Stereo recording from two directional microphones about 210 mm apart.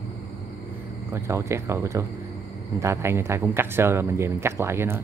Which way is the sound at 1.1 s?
15° right (ahead or behind).